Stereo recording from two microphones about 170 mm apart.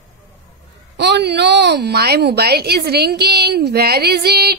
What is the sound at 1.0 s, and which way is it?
A woman's voice, 80° right.